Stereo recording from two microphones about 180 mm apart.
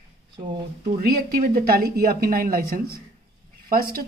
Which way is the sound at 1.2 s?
55° right (ahead or behind).